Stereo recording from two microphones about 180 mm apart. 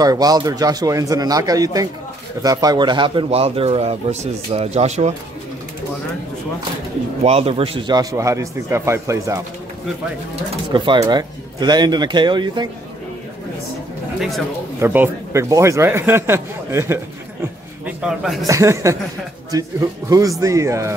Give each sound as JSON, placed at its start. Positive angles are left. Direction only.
{"t": 0.0, "sound": "speech", "side_deg": -20}
{"t": 7.2, "sound": "speech", "side_deg": -30}
{"t": 10.5, "sound": "speech", "side_deg": -25}
{"t": 14.8, "sound": "speech", "side_deg": -10}
{"t": 17.8, "sound": "a man's voice", "side_deg": -5}
{"t": 18.5, "sound": "speech", "side_deg": -15}